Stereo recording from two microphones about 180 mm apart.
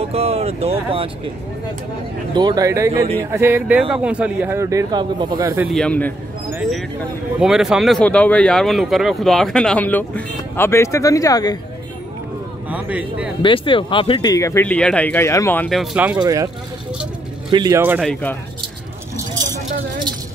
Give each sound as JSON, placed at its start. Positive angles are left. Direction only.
{"t": 0.1, "sound": "speech", "side_deg": -35}
{"t": 2.3, "sound": "speech", "side_deg": -25}
{"t": 5.7, "sound": "speech", "side_deg": 5}
{"t": 7.3, "sound": "speech", "side_deg": 0}
{"t": 12.6, "sound": "speech", "side_deg": -10}
{"t": 13.4, "sound": "speech", "side_deg": 30}
{"t": 16.2, "sound": "speech", "side_deg": -20}
{"t": 17.5, "sound": "speech", "side_deg": -25}
{"t": 17.7, "sound": "speech", "side_deg": -10}